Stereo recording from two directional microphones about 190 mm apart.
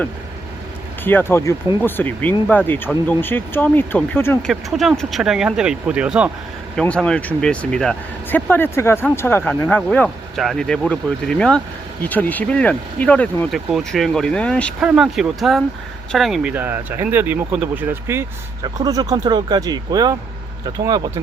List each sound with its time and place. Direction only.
1.0 s speech: 10° left (ahead or behind)
4.7 s speech: centre (ahead or behind)
6.7 s speech: 5° left (ahead or behind); by 21.1 s 20° right (ahead or behind)